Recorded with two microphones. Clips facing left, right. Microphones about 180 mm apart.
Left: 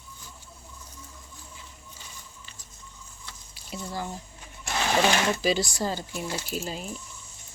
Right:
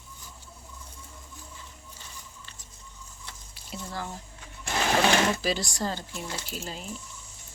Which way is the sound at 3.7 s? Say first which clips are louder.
Left 2 dB; 5° left (ahead or behind).